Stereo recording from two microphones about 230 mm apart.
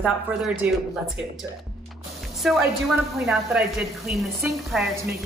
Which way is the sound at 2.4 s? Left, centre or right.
Centre.